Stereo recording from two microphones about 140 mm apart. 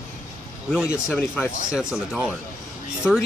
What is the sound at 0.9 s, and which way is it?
Speech, 15° left (ahead or behind).